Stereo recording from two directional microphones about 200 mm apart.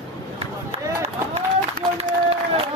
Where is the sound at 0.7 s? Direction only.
30° right (ahead or behind).